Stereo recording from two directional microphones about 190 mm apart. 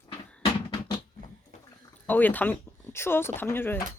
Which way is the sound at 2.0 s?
10° left (ahead or behind).